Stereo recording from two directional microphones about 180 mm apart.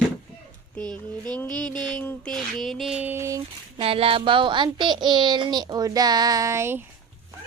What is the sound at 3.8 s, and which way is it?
Speech, 30° right (ahead or behind).